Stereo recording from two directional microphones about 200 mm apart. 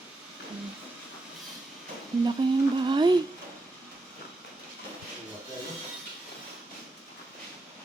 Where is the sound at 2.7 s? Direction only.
25° right (ahead or behind).